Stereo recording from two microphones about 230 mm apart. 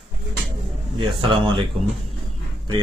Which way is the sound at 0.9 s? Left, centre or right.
Right.